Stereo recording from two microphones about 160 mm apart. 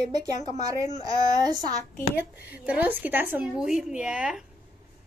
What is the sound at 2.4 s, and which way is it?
A woman's voice, 10° right (ahead or behind).